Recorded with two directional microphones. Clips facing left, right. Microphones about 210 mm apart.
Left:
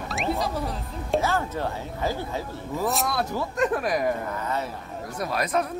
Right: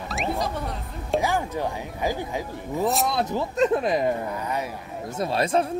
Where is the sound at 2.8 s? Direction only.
Centre (ahead or behind).